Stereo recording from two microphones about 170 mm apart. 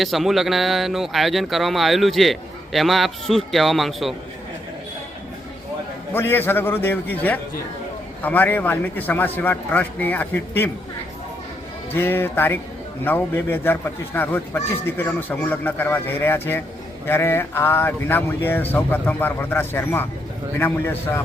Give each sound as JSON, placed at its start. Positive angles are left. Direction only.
{"t": 0.0, "sound": "speech", "side_deg": 0}
{"t": 6.1, "sound": "a man's voice", "side_deg": 15}
{"t": 11.9, "sound": "a man's voice", "side_deg": 15}